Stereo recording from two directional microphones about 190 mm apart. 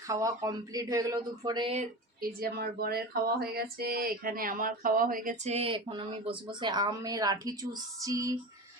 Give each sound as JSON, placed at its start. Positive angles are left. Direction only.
{"t": 0.1, "sound": "speech", "side_deg": -15}
{"t": 2.2, "sound": "speech", "side_deg": -55}